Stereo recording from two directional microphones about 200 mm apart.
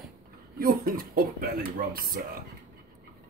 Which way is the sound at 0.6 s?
45° right (ahead or behind).